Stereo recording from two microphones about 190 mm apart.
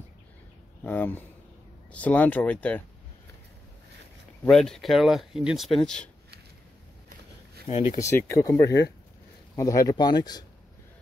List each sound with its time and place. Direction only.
0.8 s speech: 10° left (ahead or behind)
4.5 s speech: centre (ahead or behind)
7.9 s speech: 15° left (ahead or behind)